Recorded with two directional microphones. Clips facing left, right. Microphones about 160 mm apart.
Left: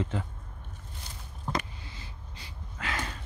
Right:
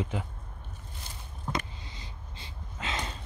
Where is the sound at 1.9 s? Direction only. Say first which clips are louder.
Even; 25° right (ahead or behind).